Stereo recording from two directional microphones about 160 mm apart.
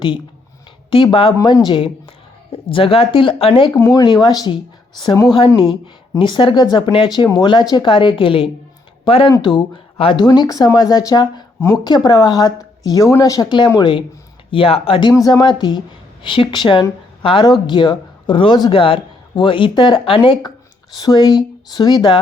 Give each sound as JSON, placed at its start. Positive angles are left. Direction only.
{"t": 0.9, "sound": "speech", "side_deg": 35}
{"t": 1.4, "sound": "speech", "side_deg": 25}
{"t": 3.7, "sound": "speech", "side_deg": 20}
{"t": 15.1, "sound": "speech", "side_deg": 25}